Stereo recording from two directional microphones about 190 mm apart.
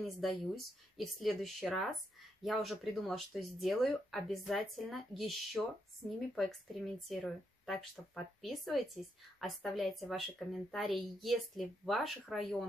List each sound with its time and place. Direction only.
0.9 s speech: centre (ahead or behind)